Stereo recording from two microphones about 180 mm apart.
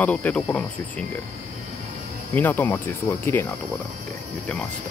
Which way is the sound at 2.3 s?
10° left (ahead or behind).